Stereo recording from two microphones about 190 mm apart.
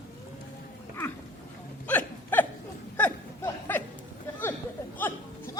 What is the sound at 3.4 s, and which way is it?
Chuckle, 10° left (ahead or behind).